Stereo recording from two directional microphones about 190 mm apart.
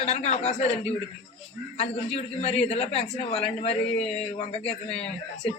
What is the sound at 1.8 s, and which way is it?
A man's voice, 35° left (ahead or behind).